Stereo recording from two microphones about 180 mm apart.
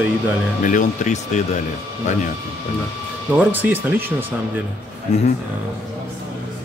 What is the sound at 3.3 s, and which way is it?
Speech, 10° right (ahead or behind).